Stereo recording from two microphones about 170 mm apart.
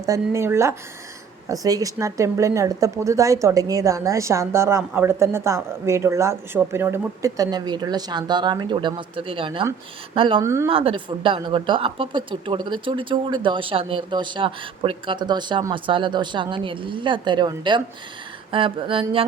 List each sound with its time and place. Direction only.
0.0 s speech: 15° right (ahead or behind)
10.4 s speech: 15° right (ahead or behind)
10.7 s speech: 30° right (ahead or behind)
18.5 s a sound: 30° right (ahead or behind)